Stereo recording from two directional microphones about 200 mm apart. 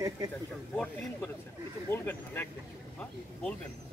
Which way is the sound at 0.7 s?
5° left (ahead or behind).